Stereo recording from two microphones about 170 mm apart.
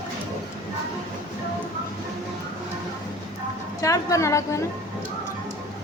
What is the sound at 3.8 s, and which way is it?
Speech, 20° left (ahead or behind).